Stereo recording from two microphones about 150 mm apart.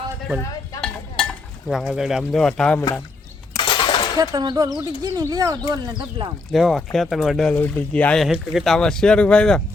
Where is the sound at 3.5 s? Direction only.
30° left (ahead or behind).